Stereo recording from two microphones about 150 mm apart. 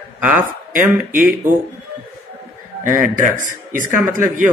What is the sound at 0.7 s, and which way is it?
Speech, 60° right (ahead or behind).